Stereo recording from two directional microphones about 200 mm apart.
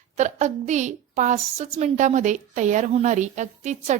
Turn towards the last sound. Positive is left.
turn(degrees=-35)  # may be behind; listen again after turning